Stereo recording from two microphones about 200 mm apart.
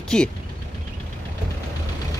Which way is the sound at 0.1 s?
5° left (ahead or behind).